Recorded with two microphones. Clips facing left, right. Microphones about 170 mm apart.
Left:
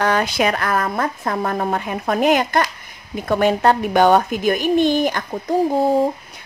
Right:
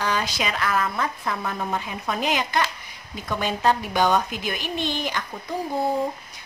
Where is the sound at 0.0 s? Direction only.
55° left (ahead or behind).